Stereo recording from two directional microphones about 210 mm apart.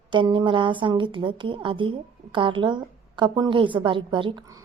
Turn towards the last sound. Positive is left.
turn(degrees=-20)  # may be behind; listen again after turning